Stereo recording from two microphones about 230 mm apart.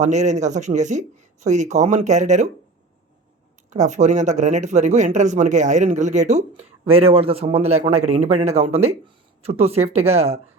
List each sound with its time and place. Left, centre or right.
0.0 s speech: right
3.7 s a man's voice: right